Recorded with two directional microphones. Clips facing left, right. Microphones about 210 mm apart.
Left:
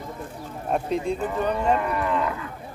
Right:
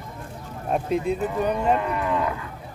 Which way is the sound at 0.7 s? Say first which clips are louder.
Right 1 dB; 5° right (ahead or behind).